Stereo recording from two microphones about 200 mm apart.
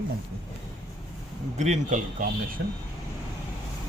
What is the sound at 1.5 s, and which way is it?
Speech, 35° right (ahead or behind).